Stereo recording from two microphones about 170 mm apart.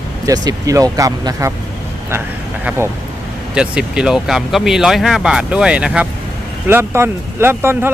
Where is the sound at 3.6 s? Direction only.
5° right (ahead or behind).